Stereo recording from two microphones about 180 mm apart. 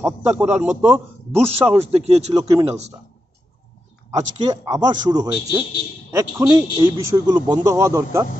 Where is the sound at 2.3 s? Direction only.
20° right (ahead or behind).